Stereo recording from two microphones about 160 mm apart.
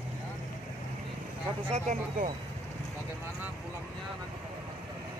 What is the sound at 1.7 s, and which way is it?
Speech, 55° right (ahead or behind).